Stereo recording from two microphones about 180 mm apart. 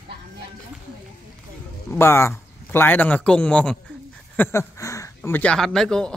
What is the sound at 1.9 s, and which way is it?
A man's voice, 15° left (ahead or behind).